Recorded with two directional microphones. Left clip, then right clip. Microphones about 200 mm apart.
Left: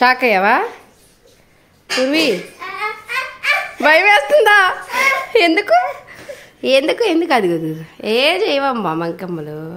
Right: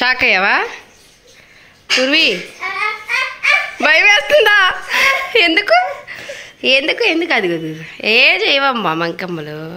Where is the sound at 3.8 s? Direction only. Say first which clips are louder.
Left 1 dB; 15° left (ahead or behind).